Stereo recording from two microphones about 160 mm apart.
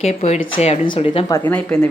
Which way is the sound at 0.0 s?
45° left (ahead or behind).